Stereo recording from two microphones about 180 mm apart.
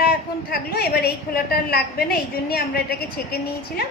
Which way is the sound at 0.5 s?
60° left (ahead or behind).